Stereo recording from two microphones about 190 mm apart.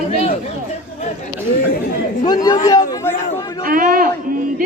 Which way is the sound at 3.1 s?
40° left (ahead or behind).